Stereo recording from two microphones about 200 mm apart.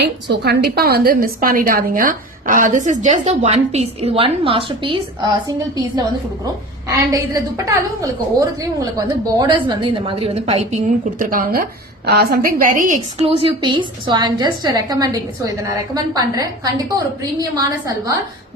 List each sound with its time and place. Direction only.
0.0 s a woman's voice: 55° right (ahead or behind); by 13.2 s 40° right (ahead or behind)
13.2 s a woman's voice: 30° right (ahead or behind)
17.6 s a woman's voice: 15° right (ahead or behind)